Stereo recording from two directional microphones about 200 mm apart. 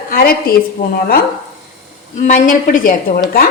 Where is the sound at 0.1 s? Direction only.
50° left (ahead or behind).